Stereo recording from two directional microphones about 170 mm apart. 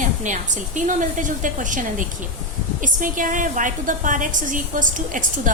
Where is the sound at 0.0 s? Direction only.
45° right (ahead or behind).